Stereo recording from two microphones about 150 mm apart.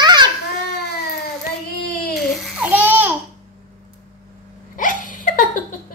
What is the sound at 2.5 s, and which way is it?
Babbling, 10° right (ahead or behind).